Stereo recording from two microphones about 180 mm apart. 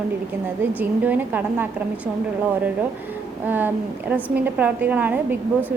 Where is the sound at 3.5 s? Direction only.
10° right (ahead or behind).